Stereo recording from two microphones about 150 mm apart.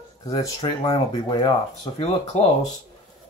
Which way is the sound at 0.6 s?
25° left (ahead or behind).